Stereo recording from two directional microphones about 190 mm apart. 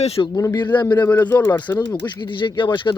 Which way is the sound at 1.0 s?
10° left (ahead or behind).